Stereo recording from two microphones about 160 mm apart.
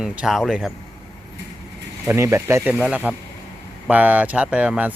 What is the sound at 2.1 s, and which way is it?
Speech, 15° right (ahead or behind).